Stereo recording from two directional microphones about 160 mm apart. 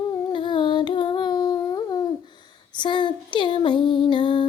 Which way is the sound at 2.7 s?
30° left (ahead or behind).